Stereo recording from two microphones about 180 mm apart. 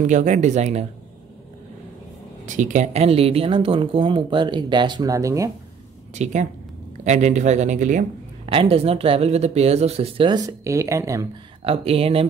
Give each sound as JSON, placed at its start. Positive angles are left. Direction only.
{"t": 0.0, "sound": "speech", "side_deg": -45}
{"t": 2.4, "sound": "speech", "side_deg": -45}
{"t": 6.1, "sound": "speech", "side_deg": -40}
{"t": 8.5, "sound": "speech", "side_deg": -30}
{"t": 11.6, "sound": "speech", "side_deg": -30}